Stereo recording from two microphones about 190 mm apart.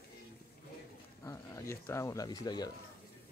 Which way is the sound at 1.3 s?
15° left (ahead or behind).